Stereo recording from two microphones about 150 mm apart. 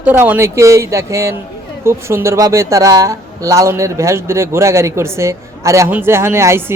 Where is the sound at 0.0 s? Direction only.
10° right (ahead or behind).